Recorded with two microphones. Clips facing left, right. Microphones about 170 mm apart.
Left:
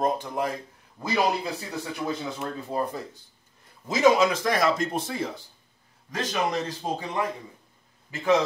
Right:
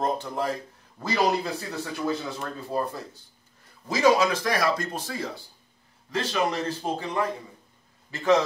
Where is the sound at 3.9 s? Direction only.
20° left (ahead or behind).